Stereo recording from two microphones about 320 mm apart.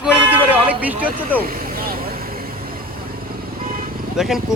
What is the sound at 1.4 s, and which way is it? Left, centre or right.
Vehicle, right.